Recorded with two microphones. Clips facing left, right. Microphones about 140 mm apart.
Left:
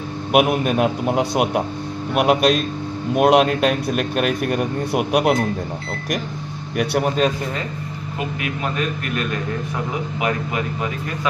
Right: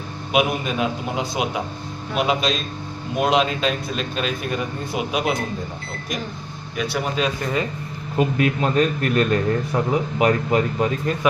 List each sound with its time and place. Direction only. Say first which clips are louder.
0.3 s speech: left 4 dB; 55° left (ahead or behind)
6.7 s speech: left 5 dB; 60° left (ahead or behind)
8.4 s a man's voice: right 5 dB; 35° right (ahead or behind)